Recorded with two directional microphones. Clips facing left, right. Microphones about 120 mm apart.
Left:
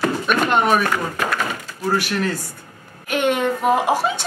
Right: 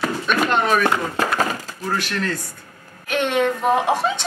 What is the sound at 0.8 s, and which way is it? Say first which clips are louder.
Speech: right 2 dB; 30° right (ahead or behind).